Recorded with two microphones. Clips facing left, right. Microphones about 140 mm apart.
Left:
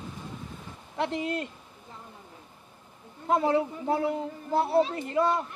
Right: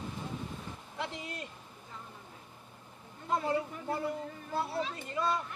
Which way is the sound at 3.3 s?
70° left (ahead or behind).